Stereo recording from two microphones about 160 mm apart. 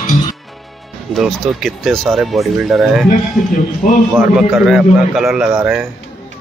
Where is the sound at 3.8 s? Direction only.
50° left (ahead or behind).